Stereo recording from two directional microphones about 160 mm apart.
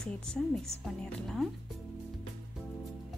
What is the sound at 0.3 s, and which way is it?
A woman's voice, centre (ahead or behind).